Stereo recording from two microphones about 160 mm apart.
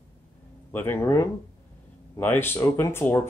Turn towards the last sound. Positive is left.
turn(degrees=15)  # may be behind; listen again after turning